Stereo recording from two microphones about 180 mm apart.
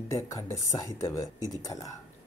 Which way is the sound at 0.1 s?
20° left (ahead or behind).